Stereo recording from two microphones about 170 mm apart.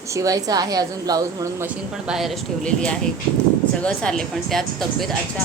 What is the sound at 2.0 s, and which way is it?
A woman's voice, centre (ahead or behind).